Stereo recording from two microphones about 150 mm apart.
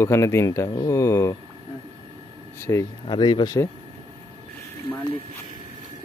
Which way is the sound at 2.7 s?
20° left (ahead or behind).